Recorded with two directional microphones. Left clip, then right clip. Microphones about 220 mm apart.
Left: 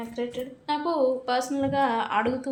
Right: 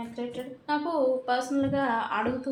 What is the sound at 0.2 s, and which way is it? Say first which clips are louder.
Speech: left 5 dB; 40° left (ahead or behind).